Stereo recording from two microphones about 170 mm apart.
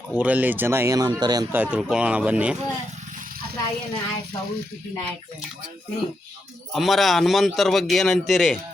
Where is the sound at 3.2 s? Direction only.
60° right (ahead or behind).